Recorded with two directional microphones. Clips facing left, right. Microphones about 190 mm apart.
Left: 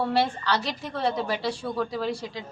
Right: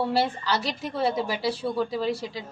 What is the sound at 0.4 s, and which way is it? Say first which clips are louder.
A woman's voice: even; 5° right (ahead or behind).